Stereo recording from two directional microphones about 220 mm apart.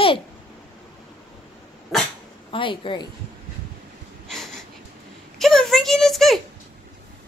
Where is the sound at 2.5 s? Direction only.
25° left (ahead or behind).